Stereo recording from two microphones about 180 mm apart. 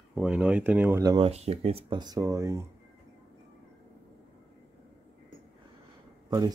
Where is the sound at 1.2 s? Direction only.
35° right (ahead or behind); by 2.6 s 15° right (ahead or behind).